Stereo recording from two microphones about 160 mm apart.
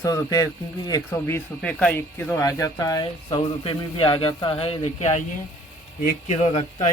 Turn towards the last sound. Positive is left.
turn(degrees=40)  # may be behind; listen again after turning